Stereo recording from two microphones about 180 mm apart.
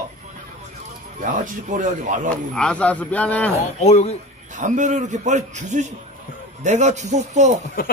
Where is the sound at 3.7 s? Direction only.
35° left (ahead or behind).